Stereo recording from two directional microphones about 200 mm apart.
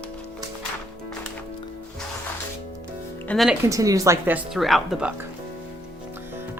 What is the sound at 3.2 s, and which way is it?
Speech, centre (ahead or behind).